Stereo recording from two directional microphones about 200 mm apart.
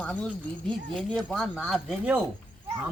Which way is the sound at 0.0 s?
5° left (ahead or behind).